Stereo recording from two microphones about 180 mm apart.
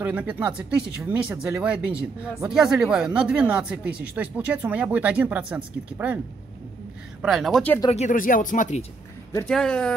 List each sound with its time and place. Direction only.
0.0 s speech: 5° right (ahead or behind)
7.9 s speech: 45° left (ahead or behind)
9.5 s speech: 5° left (ahead or behind)